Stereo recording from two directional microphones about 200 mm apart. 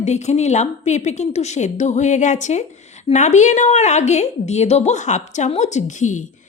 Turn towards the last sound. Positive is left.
turn(degrees=35)  # may be behind; listen again after turning